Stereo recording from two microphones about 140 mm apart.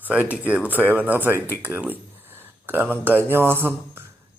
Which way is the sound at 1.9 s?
15° right (ahead or behind).